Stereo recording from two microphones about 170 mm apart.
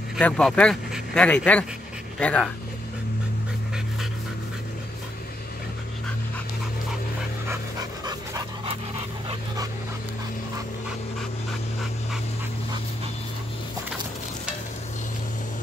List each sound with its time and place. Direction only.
0.2 s speech: 5° left (ahead or behind)
8.0 s dog: 25° right (ahead or behind)